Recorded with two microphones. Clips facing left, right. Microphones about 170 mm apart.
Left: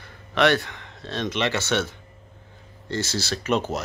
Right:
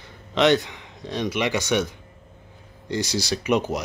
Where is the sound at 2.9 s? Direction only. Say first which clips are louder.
Right 2 dB; 15° right (ahead or behind).